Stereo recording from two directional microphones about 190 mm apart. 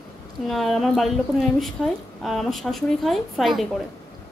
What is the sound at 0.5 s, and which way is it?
A woman's voice, centre (ahead or behind).